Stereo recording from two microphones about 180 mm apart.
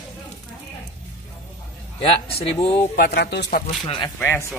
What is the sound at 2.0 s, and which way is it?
Speech, 35° left (ahead or behind).